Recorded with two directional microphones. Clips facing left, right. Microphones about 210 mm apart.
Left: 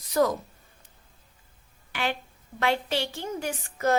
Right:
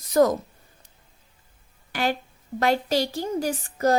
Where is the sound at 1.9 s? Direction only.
40° right (ahead or behind).